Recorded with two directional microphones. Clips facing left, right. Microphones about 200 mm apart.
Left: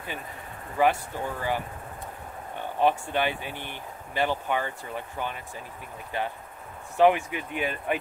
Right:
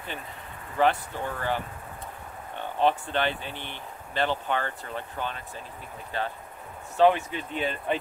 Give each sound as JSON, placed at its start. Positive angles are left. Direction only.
{"t": 0.7, "sound": "speech", "side_deg": 10}
{"t": 2.8, "sound": "speech", "side_deg": 10}